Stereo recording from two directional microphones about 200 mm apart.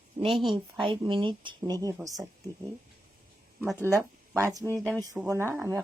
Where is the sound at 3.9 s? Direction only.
15° right (ahead or behind).